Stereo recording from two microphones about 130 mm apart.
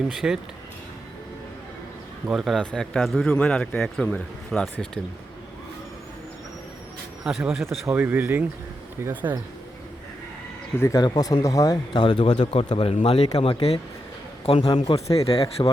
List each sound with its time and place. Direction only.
0.1 s speech: 5° right (ahead or behind)
2.2 s speech: centre (ahead or behind)
7.3 s speech: centre (ahead or behind)
7.9 s speech: 15° right (ahead or behind)
10.8 s speech: 25° left (ahead or behind); by 15.7 s 45° left (ahead or behind)